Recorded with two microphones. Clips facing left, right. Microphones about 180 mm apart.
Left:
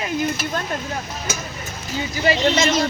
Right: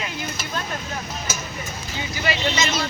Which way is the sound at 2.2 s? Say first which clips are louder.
Left 6 dB; 45° left (ahead or behind).